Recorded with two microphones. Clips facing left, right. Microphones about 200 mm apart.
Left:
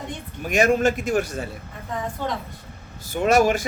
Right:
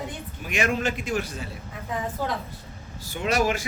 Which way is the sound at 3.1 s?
45° left (ahead or behind).